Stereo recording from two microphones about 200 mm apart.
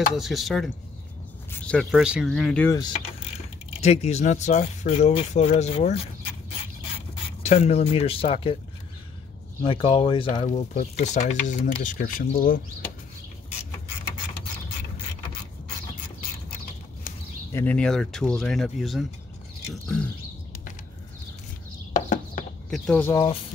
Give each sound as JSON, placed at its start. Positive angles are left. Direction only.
{"t": 0.1, "sound": "speech", "side_deg": 0}
{"t": 1.7, "sound": "speech", "side_deg": 0}
{"t": 3.8, "sound": "speech", "side_deg": 35}
{"t": 7.4, "sound": "speech", "side_deg": 30}
{"t": 9.7, "sound": "speech", "side_deg": 25}
{"t": 17.5, "sound": "speech", "side_deg": 10}
{"t": 21.9, "sound": "horse", "side_deg": 40}
{"t": 22.7, "sound": "speech", "side_deg": 5}